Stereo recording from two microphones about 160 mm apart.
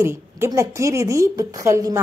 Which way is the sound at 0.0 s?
15° right (ahead or behind).